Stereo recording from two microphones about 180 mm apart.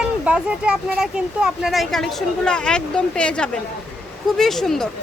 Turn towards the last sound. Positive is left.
turn(degrees=0)  # may be behind; listen again after turning